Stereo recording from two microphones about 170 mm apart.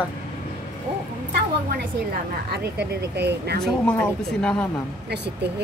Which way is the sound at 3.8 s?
5° left (ahead or behind).